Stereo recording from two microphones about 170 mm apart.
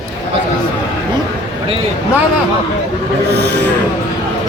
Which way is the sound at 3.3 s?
85° right.